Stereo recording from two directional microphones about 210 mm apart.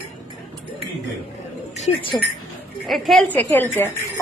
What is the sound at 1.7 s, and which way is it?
Speech, 30° left (ahead or behind).